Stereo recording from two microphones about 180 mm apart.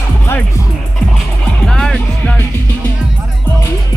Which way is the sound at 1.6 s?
5° left (ahead or behind).